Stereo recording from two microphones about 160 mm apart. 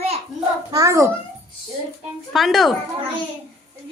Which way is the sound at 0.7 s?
20° right (ahead or behind).